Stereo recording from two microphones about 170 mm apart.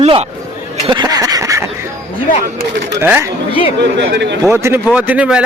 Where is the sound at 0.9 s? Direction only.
25° right (ahead or behind).